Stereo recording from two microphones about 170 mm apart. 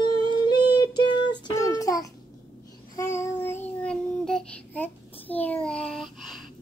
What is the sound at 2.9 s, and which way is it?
Child singing, 15° left (ahead or behind).